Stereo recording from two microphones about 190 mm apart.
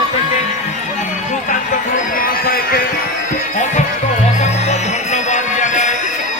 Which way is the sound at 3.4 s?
40° left (ahead or behind).